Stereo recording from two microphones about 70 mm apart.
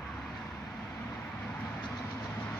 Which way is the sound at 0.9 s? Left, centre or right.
Centre.